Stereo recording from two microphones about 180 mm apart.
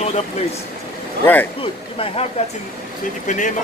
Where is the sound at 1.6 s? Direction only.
30° left (ahead or behind).